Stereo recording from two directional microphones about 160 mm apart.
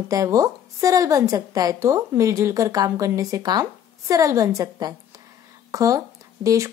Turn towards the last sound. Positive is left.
turn(degrees=-20)  # may be behind; listen again after turning